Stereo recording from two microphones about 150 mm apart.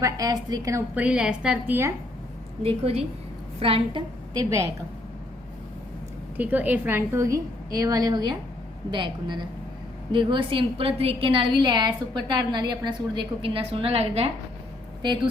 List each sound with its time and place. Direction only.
0.0 s a woman's voice: 25° right (ahead or behind)
0.9 s a woman's voice: 5° right (ahead or behind)
2.6 s a woman's voice: 40° right (ahead or behind)
6.3 s a woman's voice: 10° right (ahead or behind); by 14.3 s 45° right (ahead or behind)
15.0 s a woman's voice: 30° right (ahead or behind)